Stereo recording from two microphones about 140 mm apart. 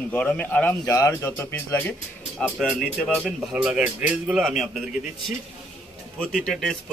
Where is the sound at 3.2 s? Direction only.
5° right (ahead or behind).